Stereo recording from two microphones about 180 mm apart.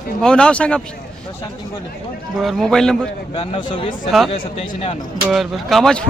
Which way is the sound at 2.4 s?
Centre (ahead or behind).